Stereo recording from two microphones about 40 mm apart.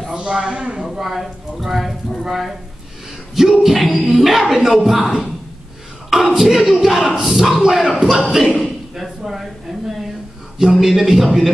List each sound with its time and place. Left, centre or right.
0.1 s a man's voice: centre
0.8 s speech: centre
3.6 s speech: centre
6.0 s speech: centre
8.5 s a sound: centre
10.6 s speech: centre